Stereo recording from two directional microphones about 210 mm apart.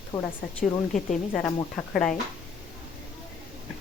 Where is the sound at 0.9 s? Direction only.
5° left (ahead or behind).